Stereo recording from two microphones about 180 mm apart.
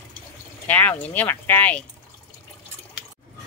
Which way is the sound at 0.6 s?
10° left (ahead or behind).